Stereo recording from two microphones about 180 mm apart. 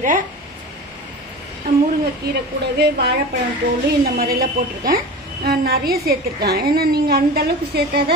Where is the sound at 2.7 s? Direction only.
65° right (ahead or behind).